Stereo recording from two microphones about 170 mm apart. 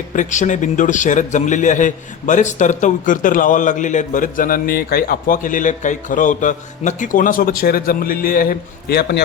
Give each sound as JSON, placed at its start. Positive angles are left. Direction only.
{"t": 0.1, "sound": "a man's voice", "side_deg": 45}